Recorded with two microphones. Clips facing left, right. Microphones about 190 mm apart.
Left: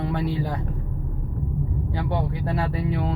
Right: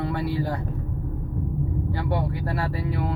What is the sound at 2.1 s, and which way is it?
Speech, 20° left (ahead or behind).